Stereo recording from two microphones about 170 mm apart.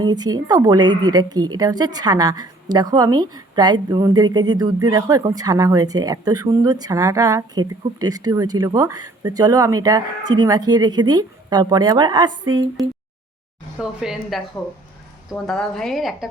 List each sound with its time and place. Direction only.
0.0 s speech: 25° right (ahead or behind)
14.0 s a woman's voice: centre (ahead or behind)